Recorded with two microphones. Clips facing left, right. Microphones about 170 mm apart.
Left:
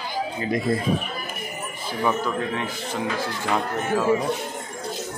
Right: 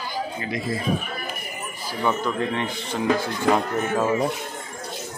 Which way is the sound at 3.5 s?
40° right (ahead or behind).